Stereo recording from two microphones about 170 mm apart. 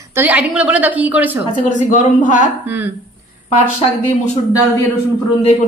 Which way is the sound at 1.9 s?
50° left (ahead or behind).